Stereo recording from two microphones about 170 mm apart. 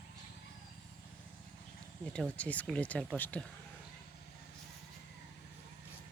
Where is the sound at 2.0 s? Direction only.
5° left (ahead or behind).